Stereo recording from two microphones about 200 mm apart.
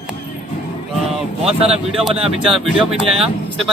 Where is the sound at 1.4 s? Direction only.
30° right (ahead or behind).